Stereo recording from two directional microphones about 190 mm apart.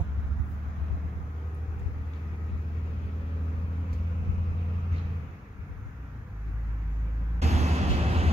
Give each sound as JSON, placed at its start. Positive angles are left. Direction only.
{"t": 7.3, "sound": "vehicle", "side_deg": -35}